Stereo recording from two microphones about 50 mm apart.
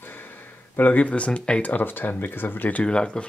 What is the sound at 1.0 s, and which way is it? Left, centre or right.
Speech, left.